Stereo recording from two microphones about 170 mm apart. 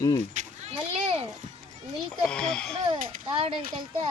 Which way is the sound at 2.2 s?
5° left (ahead or behind).